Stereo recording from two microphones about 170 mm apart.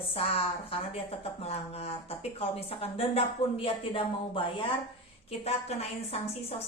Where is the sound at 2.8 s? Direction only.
35° left (ahead or behind).